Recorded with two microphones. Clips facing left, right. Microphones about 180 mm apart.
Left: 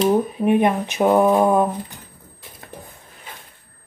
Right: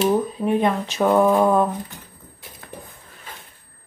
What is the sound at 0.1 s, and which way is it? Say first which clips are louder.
Speech: left 3 dB; 15° left (ahead or behind).